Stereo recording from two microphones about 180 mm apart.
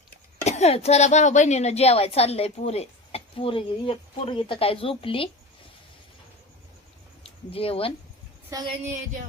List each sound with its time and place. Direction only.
0.4 s a woman's voice: 40° left (ahead or behind)
7.5 s a woman's voice: 30° left (ahead or behind)
8.8 s a sound: 45° right (ahead or behind)